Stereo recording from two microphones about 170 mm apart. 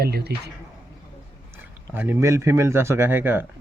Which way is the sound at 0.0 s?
70° right (ahead or behind).